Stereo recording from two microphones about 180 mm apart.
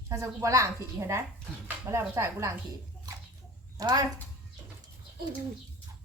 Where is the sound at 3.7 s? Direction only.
20° right (ahead or behind).